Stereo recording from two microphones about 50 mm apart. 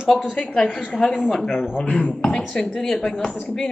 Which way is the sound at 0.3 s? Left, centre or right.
Left.